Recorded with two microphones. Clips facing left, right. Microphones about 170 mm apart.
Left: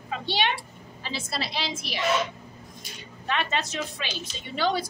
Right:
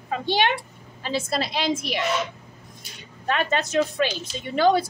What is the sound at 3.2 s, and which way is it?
A woman's voice, 45° right (ahead or behind).